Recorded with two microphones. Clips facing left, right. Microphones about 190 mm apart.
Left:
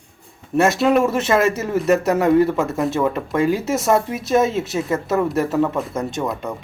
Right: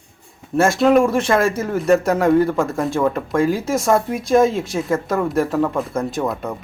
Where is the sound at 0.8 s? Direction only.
5° left (ahead or behind).